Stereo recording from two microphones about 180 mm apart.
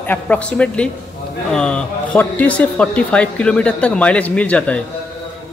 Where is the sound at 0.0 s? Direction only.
10° left (ahead or behind).